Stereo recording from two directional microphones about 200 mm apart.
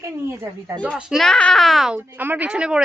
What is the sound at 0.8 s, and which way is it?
Speech, centre (ahead or behind).